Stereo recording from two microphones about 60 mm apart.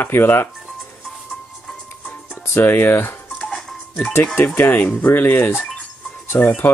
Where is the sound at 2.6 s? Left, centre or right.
Left.